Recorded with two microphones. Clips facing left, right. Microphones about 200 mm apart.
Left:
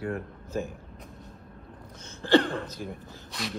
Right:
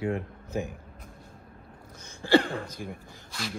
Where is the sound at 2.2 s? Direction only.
10° right (ahead or behind).